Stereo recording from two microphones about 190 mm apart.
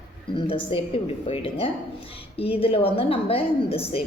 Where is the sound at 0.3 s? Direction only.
25° left (ahead or behind).